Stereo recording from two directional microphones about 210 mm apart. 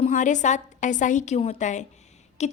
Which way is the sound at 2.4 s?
30° left (ahead or behind).